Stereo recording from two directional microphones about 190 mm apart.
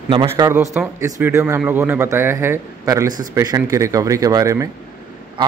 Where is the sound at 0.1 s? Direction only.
25° right (ahead or behind).